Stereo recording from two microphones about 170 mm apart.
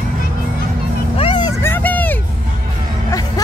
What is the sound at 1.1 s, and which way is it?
Vehicle, 30° left (ahead or behind).